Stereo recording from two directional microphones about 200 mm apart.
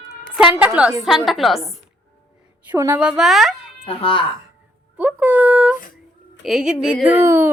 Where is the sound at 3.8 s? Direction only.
30° left (ahead or behind).